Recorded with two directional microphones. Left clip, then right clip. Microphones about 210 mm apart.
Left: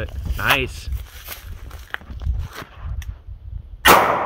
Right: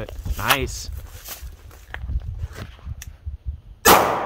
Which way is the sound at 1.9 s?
55° left (ahead or behind).